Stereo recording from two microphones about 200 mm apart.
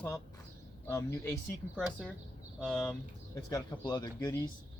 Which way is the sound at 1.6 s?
5° right (ahead or behind).